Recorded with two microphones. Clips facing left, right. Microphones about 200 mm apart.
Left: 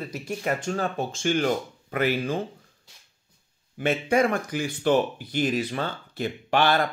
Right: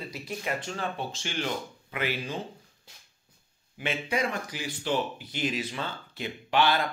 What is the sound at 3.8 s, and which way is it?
Speech, 45° left (ahead or behind).